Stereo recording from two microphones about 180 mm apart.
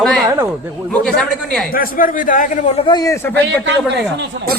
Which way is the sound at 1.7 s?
50° left (ahead or behind).